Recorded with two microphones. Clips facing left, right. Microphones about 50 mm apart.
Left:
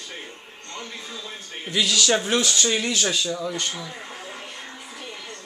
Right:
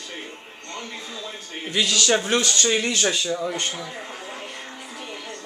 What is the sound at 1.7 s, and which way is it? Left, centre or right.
A man's voice, centre.